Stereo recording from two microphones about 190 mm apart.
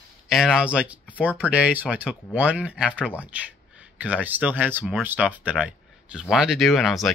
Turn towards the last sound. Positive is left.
turn(degrees=0)  # may be behind; listen again after turning